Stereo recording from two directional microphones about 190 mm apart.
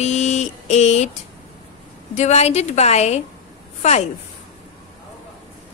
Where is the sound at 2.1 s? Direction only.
35° left (ahead or behind).